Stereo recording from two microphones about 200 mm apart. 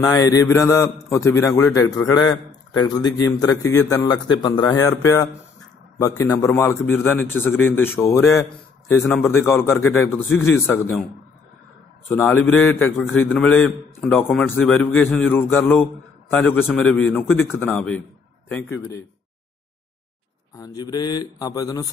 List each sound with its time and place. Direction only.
0.0 s a man's voice: 20° left (ahead or behind)
9.0 s a man's voice: centre (ahead or behind)
12.1 s a man's voice: 10° left (ahead or behind)
20.5 s speech: 20° left (ahead or behind)